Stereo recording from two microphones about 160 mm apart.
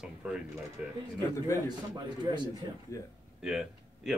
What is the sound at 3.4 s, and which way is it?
Speech, 5° right (ahead or behind).